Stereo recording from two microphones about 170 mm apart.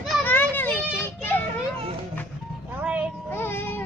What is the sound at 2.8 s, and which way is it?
Child singing, 10° right (ahead or behind).